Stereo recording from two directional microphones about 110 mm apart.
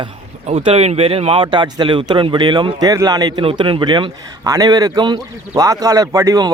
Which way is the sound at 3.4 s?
55° right (ahead or behind).